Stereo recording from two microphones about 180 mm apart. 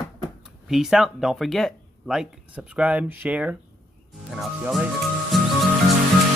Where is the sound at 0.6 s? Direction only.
Centre (ahead or behind).